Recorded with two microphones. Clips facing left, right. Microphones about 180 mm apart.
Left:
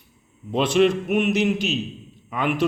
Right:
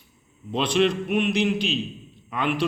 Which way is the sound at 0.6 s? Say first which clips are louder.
Left 3 dB; 50° left (ahead or behind).